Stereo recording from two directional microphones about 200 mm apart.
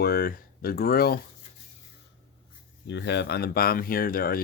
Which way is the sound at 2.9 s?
60° left (ahead or behind).